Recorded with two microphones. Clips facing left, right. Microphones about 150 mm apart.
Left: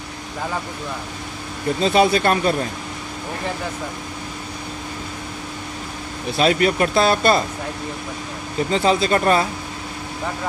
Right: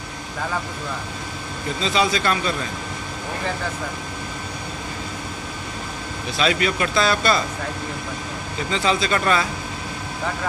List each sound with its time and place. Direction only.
1.8 s speech: 55° left (ahead or behind)
6.3 s speech: 45° left (ahead or behind)
8.6 s speech: 45° left (ahead or behind)